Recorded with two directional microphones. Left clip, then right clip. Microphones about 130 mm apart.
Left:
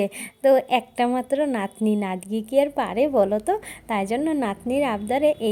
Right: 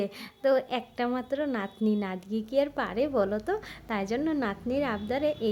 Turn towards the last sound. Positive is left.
turn(degrees=20)  # may be behind; listen again after turning